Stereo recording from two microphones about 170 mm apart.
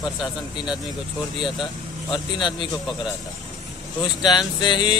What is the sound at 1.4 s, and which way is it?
A man's voice, 30° left (ahead or behind).